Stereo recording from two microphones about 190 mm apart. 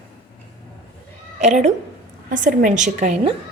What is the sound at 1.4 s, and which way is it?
A woman's voice, 35° right (ahead or behind).